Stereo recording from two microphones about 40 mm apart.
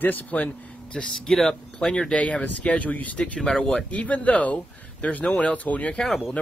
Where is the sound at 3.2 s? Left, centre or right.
Left.